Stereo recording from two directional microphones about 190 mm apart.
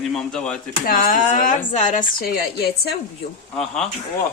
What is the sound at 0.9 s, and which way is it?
Speech, 50° left (ahead or behind).